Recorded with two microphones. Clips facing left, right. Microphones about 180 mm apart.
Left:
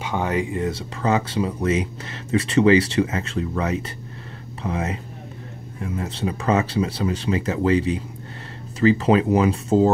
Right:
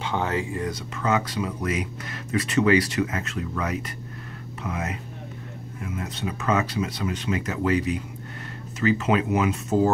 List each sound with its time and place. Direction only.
0.0 s speech: 10° left (ahead or behind); by 9.8 s 30° left (ahead or behind)